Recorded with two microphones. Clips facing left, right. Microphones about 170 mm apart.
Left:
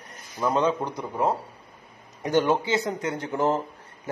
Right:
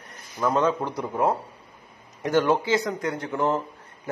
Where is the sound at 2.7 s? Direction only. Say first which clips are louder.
Right 1 dB; 30° left (ahead or behind).